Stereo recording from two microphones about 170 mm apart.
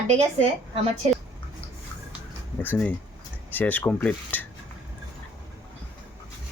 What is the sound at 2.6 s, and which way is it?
Speech, 10° left (ahead or behind).